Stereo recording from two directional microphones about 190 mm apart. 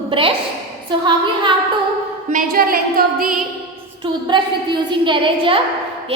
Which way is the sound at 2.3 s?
50° right (ahead or behind).